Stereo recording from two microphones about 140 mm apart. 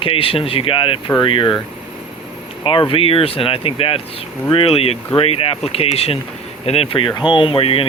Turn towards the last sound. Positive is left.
turn(degrees=40)  # may be behind; listen again after turning